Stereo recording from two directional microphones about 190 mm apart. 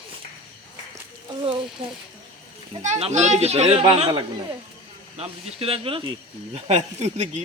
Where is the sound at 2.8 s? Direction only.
35° right (ahead or behind).